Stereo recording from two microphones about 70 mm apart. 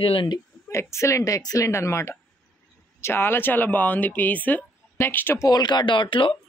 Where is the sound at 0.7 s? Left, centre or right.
Left.